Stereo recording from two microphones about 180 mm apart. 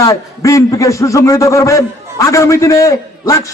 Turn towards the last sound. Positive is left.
turn(degrees=15)  # may be behind; listen again after turning